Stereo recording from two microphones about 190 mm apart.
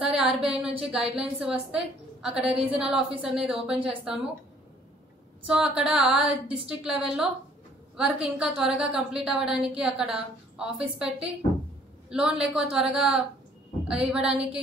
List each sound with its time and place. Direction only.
0.0 s a sound: 5° right (ahead or behind)
1.1 s a woman's voice: 5° right (ahead or behind)
5.5 s a woman's voice: 5° right (ahead or behind)